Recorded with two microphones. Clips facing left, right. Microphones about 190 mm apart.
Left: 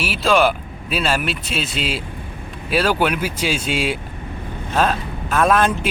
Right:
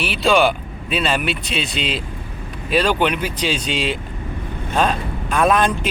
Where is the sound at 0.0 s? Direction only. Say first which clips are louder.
Right 1 dB; 5° left (ahead or behind).